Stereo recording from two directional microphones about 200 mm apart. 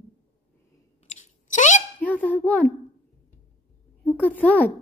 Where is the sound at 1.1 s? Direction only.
35° left (ahead or behind).